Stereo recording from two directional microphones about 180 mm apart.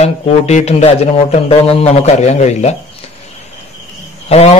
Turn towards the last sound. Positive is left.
turn(degrees=35)  # may be behind; listen again after turning